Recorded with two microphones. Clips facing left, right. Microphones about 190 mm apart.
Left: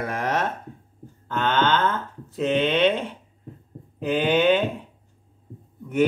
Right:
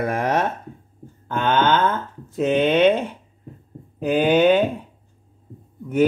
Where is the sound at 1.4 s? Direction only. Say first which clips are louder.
Right 3 dB; 50° right (ahead or behind).